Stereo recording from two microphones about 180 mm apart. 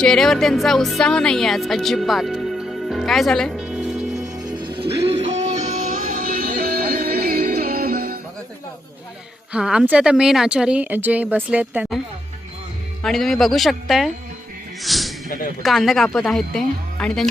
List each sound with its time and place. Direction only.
0.0 s speech: 5° left (ahead or behind)
4.4 s music: 25° right (ahead or behind); by 8.2 s 55° right (ahead or behind)
9.5 s a woman's voice: 5° right (ahead or behind)
13.0 s a woman's voice: centre (ahead or behind)